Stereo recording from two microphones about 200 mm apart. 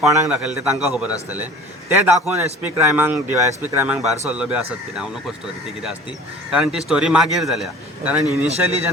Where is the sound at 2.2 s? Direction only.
5° right (ahead or behind).